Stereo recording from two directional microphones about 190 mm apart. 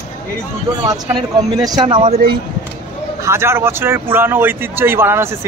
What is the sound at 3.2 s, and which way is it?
Speech, 15° right (ahead or behind).